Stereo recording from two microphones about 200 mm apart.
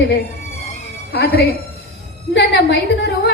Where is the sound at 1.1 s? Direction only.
55° left (ahead or behind).